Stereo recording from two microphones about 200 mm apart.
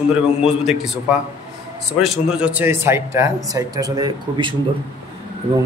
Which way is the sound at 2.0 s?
5° right (ahead or behind).